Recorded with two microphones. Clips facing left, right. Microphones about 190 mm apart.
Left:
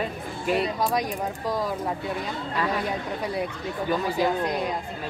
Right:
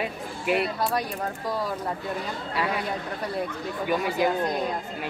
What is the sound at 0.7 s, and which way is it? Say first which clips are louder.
Speech: left 2 dB; 15° left (ahead or behind).